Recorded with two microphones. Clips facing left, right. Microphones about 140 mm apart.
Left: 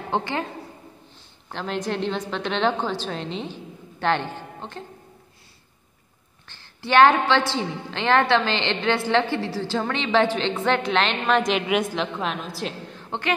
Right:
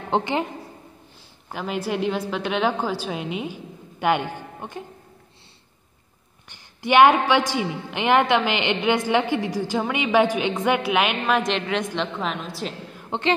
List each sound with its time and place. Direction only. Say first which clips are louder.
0.1 s a woman's voice: right 3 dB; 20° right (ahead or behind)
1.5 s a woman's voice: right 1 dB; 5° right (ahead or behind)
6.4 s a woman's voice: right 5 dB; 15° right (ahead or behind); by 13.0 s centre (ahead or behind)